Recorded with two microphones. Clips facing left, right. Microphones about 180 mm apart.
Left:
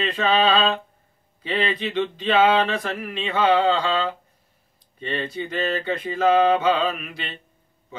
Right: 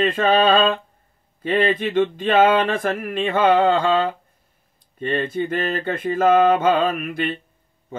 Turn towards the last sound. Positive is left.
turn(degrees=-50)  # may be behind; listen again after turning